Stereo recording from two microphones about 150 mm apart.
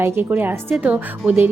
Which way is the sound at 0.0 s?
10° right (ahead or behind).